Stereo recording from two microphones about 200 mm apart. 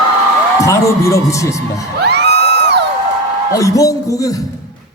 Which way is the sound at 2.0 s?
55° right (ahead or behind).